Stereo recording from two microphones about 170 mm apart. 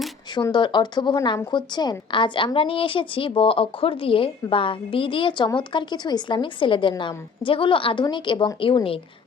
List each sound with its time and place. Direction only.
0.3 s a woman's voice: 25° left (ahead or behind)